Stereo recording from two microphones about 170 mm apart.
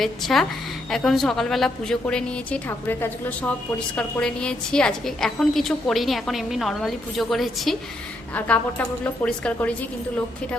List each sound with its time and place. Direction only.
0.0 s a woman's voice: centre (ahead or behind)